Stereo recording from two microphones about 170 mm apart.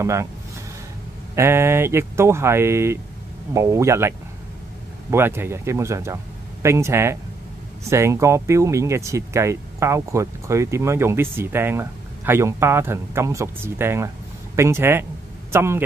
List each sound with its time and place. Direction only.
0.0 s speech: 15° right (ahead or behind)
1.3 s speech: 15° right (ahead or behind)
5.1 s speech: 15° right (ahead or behind)